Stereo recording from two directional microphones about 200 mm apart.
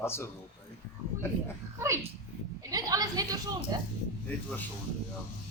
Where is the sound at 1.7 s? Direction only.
15° right (ahead or behind).